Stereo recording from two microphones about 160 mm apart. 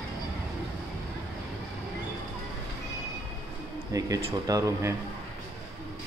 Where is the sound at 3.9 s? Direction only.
20° right (ahead or behind).